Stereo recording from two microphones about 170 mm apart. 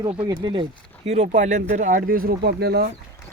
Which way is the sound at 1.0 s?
40° right (ahead or behind).